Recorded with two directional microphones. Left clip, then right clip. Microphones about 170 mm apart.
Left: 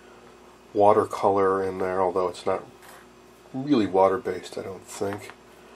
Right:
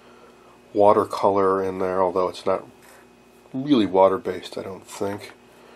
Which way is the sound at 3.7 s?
10° right (ahead or behind).